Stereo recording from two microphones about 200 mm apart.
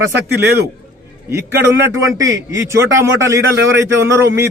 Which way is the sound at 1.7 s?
60° right (ahead or behind).